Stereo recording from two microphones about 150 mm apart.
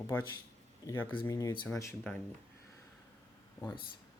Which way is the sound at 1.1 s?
35° left (ahead or behind).